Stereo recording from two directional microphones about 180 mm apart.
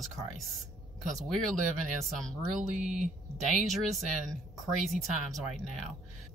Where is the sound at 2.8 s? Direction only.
45° right (ahead or behind).